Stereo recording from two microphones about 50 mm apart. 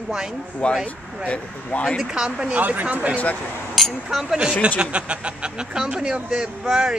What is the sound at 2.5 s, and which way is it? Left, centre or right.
Speech, right.